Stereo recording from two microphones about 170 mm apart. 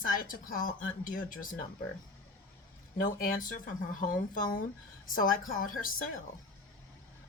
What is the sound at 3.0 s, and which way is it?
Speech, 55° left (ahead or behind).